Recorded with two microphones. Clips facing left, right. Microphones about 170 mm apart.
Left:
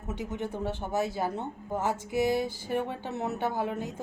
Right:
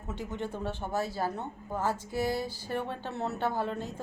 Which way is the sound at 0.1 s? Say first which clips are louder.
Left 2 dB; 15° left (ahead or behind).